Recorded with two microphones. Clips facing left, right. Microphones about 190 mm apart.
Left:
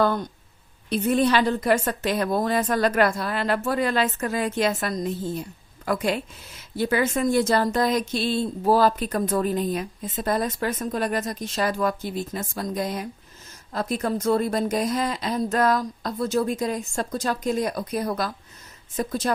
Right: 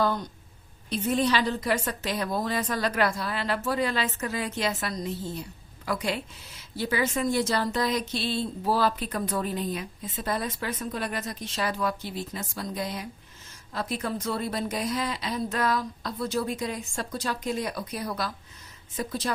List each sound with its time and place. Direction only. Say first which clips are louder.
0.0 s a woman's voice: left 4 dB; 55° left (ahead or behind)